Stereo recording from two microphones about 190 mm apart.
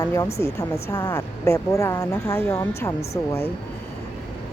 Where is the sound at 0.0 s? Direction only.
20° left (ahead or behind).